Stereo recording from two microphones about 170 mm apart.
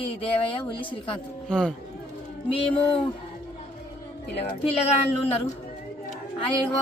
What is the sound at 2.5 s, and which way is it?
Speech, 35° left (ahead or behind).